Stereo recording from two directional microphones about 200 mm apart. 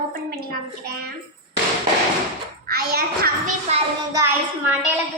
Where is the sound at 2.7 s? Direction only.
50° right (ahead or behind).